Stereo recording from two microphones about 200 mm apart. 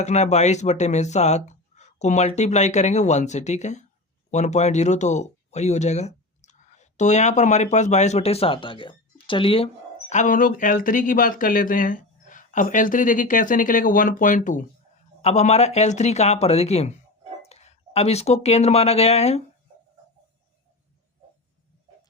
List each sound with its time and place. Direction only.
0.0 s speech: 35° left (ahead or behind)
10.1 s speech: 40° left (ahead or behind)